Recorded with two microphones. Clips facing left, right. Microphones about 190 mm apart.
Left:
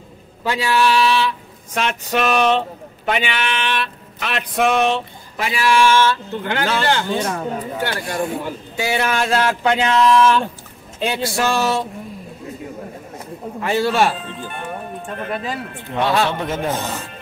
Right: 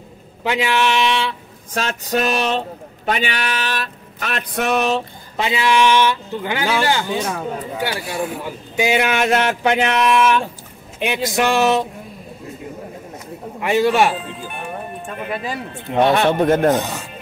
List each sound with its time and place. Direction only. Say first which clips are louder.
0.4 s speech: even; 20° right (ahead or behind)
1.8 s speech: even; 40° right (ahead or behind)
5.4 s speech: even; 20° right (ahead or behind); by 8.4 s 5° right (ahead or behind)
8.7 s speech: right 3 dB; 20° right (ahead or behind)
11.0 s speech: right 1 dB; 15° right (ahead or behind)
13.6 s speech: right 2 dB; 15° right (ahead or behind)
15.9 s speech: right 3 dB; 25° right (ahead or behind)
16.3 s speech: right 8 dB; 60° right (ahead or behind)
16.7 s speech: right 4 dB; 15° right (ahead or behind)